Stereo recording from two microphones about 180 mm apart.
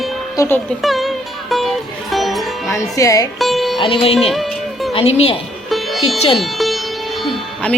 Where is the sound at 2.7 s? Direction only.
15° left (ahead or behind).